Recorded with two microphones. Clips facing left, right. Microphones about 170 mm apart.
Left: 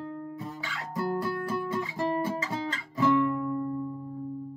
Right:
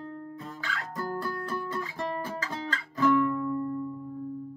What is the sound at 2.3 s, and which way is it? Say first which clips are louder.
Guitar: left 2 dB; 20° left (ahead or behind).